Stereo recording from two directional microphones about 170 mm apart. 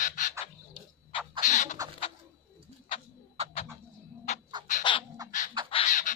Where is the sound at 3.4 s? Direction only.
40° right (ahead or behind).